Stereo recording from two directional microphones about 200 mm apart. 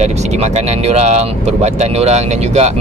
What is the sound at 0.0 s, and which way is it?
Speech, 35° right (ahead or behind).